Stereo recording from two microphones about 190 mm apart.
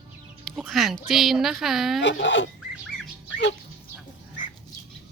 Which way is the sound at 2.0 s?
70° left (ahead or behind).